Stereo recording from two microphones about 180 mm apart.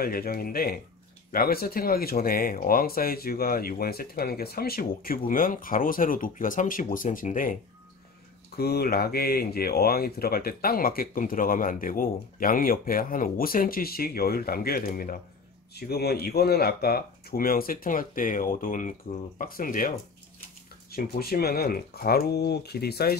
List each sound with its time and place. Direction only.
0.0 s speech: 55° left (ahead or behind)
8.5 s speech: 60° left (ahead or behind)
20.9 s speech: 55° left (ahead or behind)